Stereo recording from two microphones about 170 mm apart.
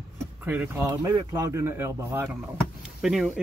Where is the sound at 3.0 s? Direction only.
5° right (ahead or behind).